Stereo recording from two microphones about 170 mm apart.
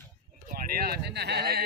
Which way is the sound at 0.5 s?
60° right (ahead or behind).